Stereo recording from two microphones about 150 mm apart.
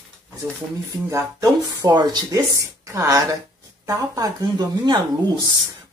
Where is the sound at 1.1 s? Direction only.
20° right (ahead or behind).